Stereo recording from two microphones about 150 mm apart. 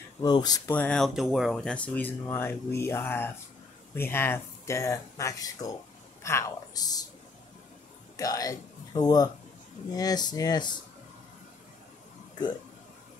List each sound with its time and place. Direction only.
0.2 s speech: 25° left (ahead or behind)
0.7 s speech: 10° left (ahead or behind); by 7.1 s 25° left (ahead or behind)
8.2 s speech: 25° left (ahead or behind)